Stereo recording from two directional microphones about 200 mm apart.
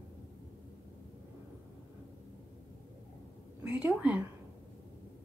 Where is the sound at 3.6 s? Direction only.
5° right (ahead or behind).